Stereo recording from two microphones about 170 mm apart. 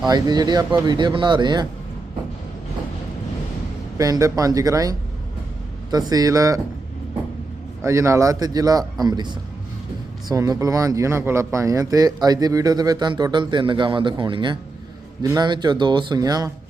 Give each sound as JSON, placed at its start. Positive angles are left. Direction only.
{"t": 0.1, "sound": "speech", "side_deg": -25}
{"t": 3.9, "sound": "speech", "side_deg": -20}
{"t": 7.8, "sound": "speech", "side_deg": -15}